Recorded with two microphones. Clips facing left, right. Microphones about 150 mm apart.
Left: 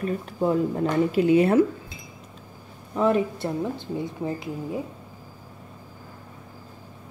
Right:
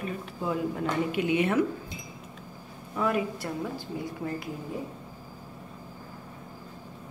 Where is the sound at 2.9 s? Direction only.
25° left (ahead or behind).